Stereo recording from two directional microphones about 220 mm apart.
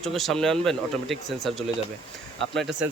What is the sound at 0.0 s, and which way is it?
Speech, centre (ahead or behind).